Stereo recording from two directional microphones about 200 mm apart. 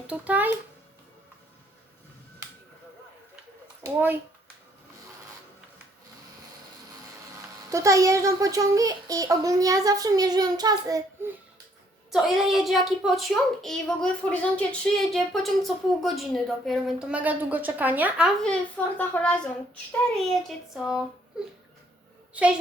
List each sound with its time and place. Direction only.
0.1 s a child's voice: 10° right (ahead or behind)
3.8 s a child's voice: 10° right (ahead or behind)
7.7 s a child's voice: 15° right (ahead or behind)
12.1 s a woman's voice: centre (ahead or behind)
18.9 s a woman's voice: 5° left (ahead or behind)
22.3 s a child's voice: 5° right (ahead or behind)